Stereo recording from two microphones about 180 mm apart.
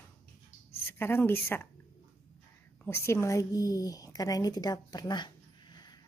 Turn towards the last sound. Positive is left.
turn(degrees=25)  # may be behind; listen again after turning